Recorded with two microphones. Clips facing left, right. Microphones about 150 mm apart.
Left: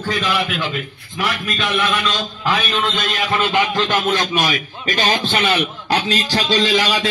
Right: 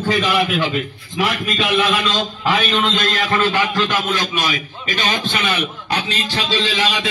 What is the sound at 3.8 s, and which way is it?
A man's voice, 30° left (ahead or behind).